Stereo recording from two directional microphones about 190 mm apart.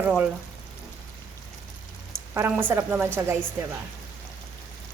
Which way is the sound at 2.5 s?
10° right (ahead or behind).